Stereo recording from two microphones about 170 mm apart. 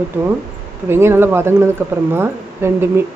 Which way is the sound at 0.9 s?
15° right (ahead or behind).